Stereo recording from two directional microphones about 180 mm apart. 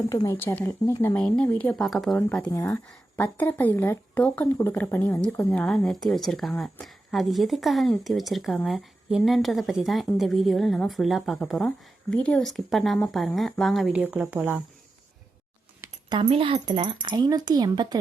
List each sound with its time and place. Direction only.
0.1 s speech: 20° left (ahead or behind); by 14.6 s 10° right (ahead or behind)
15.8 s speech: 25° right (ahead or behind)